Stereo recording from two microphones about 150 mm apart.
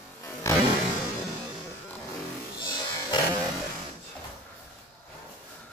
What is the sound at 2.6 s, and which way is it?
Music, 30° left (ahead or behind).